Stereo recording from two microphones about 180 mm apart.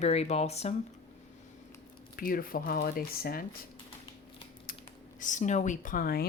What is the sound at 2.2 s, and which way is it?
Speech, 50° left (ahead or behind).